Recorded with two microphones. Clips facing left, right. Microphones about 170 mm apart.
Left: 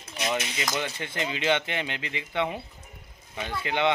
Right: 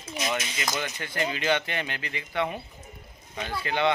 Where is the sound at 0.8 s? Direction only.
25° left (ahead or behind).